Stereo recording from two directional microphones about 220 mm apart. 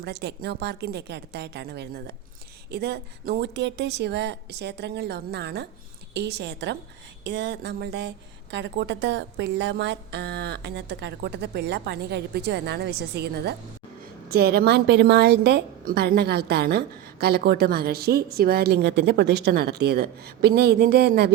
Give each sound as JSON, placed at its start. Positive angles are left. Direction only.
{"t": 0.0, "sound": "a woman's voice", "side_deg": -50}